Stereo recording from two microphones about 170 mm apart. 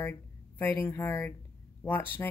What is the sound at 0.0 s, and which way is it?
Speech, 10° left (ahead or behind).